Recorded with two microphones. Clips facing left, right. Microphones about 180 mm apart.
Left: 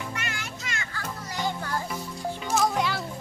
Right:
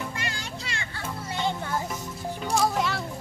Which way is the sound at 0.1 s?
35° right (ahead or behind).